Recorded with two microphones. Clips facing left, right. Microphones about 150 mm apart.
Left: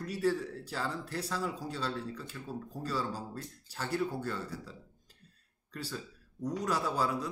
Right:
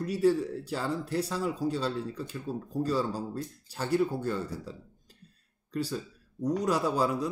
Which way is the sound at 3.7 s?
15° right (ahead or behind).